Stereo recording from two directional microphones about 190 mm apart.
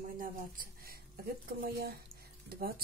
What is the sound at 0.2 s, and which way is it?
Speech, 50° right (ahead or behind).